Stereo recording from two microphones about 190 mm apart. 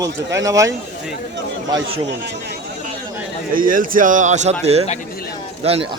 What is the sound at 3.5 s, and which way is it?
A man's voice, 45° right (ahead or behind).